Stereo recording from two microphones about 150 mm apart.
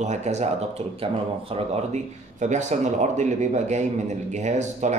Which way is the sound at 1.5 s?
45° right (ahead or behind).